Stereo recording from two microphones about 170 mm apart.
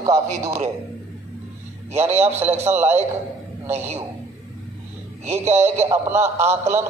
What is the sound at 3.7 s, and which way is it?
Speech, 40° right (ahead or behind).